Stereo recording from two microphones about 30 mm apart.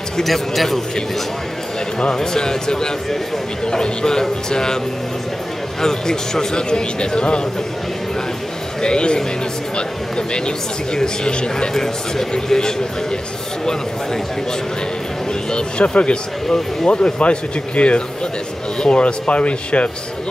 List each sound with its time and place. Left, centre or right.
0.2 s speech: centre
2.1 s speech: left
5.8 s speech: centre
8.8 s speech: left
11.7 s speech: centre
15.5 s speech: left